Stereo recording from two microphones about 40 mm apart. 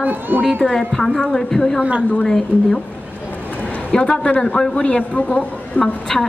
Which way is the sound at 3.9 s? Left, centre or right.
Left.